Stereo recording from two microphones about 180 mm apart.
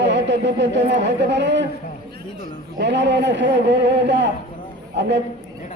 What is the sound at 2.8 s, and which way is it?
Speech, 75° right (ahead or behind).